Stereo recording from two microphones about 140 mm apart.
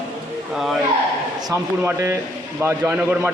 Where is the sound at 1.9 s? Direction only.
20° right (ahead or behind).